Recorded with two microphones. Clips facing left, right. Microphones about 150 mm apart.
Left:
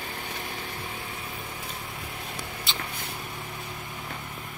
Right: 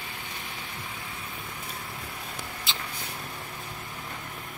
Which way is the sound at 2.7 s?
Centre (ahead or behind).